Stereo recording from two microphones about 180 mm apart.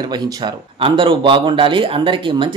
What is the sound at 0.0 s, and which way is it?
Speech, 25° right (ahead or behind).